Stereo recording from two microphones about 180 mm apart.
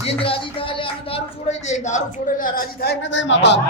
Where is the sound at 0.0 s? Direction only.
30° left (ahead or behind); by 3.6 s 80° left.